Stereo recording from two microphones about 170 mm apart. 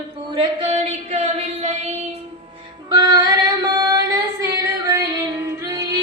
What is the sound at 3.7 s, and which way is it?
Female singing, 20° right (ahead or behind).